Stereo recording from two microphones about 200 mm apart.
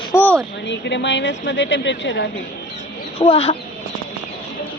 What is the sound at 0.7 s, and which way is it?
A woman's voice, 60° left (ahead or behind).